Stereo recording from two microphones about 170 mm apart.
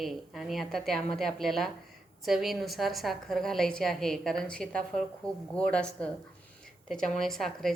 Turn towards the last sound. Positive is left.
turn(degrees=0)  # may be behind; listen again after turning